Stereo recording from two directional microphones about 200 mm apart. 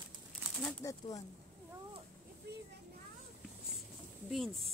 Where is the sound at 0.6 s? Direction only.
15° left (ahead or behind).